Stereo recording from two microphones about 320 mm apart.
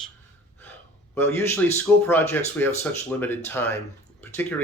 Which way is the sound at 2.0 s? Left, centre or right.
Centre.